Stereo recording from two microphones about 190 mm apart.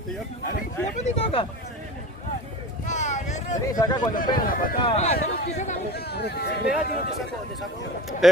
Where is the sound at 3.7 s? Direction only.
20° left (ahead or behind).